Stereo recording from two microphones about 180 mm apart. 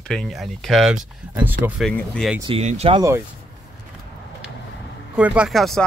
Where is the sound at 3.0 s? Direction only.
15° right (ahead or behind).